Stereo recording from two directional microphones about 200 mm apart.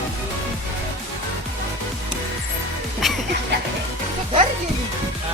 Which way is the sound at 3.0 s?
Centre (ahead or behind).